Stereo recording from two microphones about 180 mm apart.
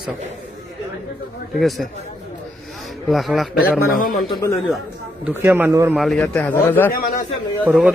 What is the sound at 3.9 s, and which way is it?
Speech, 50° left (ahead or behind).